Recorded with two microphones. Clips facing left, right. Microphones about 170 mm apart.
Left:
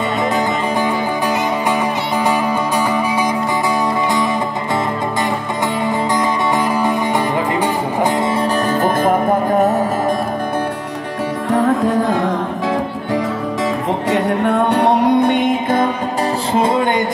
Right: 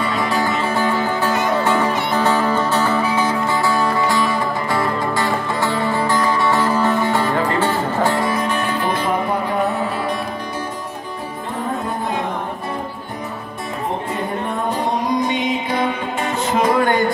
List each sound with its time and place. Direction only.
0.4 s music: 15° left (ahead or behind)
5.8 s music: 15° left (ahead or behind)
8.6 s music: 45° left (ahead or behind)
11.5 s music: 90° left
14.1 s music: 80° left; by 15.9 s 50° left (ahead or behind)
16.5 s music: 25° left (ahead or behind)